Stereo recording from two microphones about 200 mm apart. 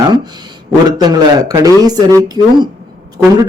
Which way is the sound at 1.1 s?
20° right (ahead or behind).